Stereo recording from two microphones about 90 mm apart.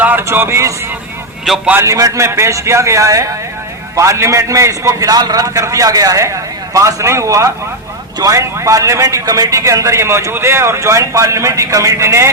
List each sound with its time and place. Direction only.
0.0 s speech: 25° right (ahead or behind)
1.5 s a man's voice: 5° right (ahead or behind)
1.8 s a man's voice: 40° right (ahead or behind)